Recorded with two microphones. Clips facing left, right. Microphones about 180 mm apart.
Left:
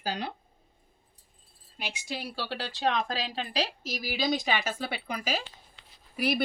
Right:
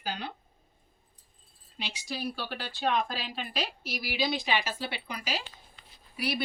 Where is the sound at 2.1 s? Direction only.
25° left (ahead or behind).